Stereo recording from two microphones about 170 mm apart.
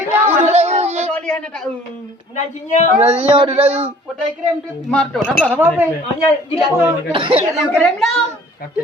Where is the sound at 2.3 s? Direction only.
45° left (ahead or behind).